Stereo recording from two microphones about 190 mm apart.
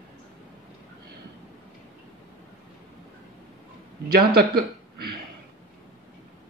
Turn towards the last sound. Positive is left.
turn(degrees=-55)  # may be behind; listen again after turning